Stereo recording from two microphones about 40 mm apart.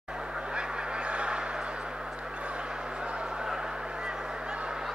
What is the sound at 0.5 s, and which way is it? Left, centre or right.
Quack, right.